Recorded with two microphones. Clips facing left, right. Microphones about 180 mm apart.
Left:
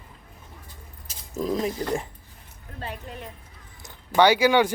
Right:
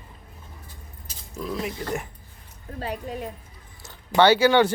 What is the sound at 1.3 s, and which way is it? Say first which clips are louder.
Speech: left 4 dB; 40° left (ahead or behind).